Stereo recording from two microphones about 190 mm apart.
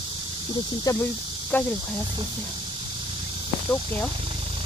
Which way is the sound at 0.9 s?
20° left (ahead or behind).